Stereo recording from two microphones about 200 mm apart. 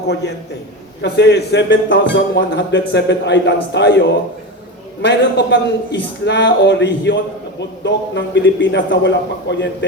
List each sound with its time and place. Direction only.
0.1 s a man's voice: 60° left (ahead or behind)